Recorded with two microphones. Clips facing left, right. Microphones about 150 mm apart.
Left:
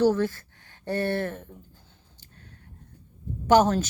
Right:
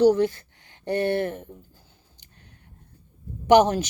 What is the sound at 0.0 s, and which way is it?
A woman's voice, 15° right (ahead or behind).